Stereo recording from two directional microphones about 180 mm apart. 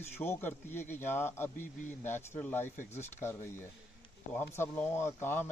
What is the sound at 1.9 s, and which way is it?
Speech, 10° left (ahead or behind).